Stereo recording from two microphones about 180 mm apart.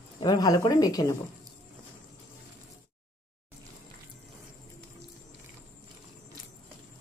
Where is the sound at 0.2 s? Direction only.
20° left (ahead or behind).